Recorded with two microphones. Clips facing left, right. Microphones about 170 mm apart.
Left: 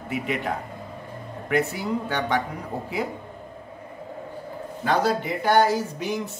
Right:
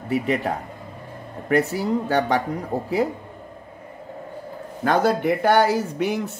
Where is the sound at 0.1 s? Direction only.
40° right (ahead or behind).